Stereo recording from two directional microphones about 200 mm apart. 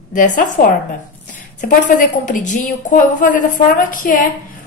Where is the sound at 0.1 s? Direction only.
40° left (ahead or behind).